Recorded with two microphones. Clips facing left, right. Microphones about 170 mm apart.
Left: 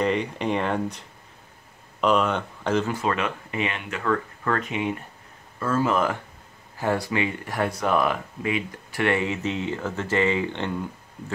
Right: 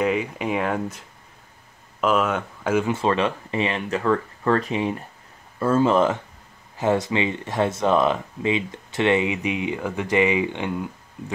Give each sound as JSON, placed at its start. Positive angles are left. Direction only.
{"t": 0.0, "sound": "speech", "side_deg": -5}
{"t": 2.9, "sound": "speech", "side_deg": -30}